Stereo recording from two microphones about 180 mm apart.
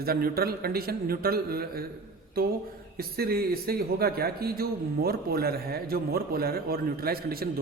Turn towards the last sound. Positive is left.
turn(degrees=-55)  # may be behind; listen again after turning